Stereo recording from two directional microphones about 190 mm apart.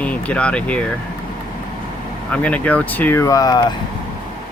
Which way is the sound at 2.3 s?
5° left (ahead or behind).